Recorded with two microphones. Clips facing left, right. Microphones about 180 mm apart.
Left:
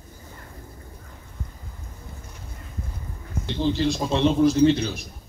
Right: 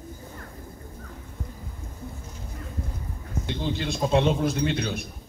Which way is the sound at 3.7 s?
55° right (ahead or behind).